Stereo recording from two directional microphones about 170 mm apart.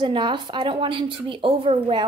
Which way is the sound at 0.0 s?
25° right (ahead or behind).